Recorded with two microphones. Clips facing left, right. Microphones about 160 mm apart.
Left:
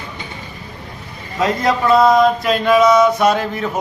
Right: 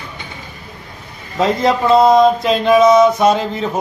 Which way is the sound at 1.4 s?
25° right (ahead or behind).